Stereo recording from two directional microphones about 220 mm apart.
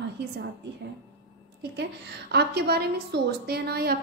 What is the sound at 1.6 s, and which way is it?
Speech, 50° right (ahead or behind).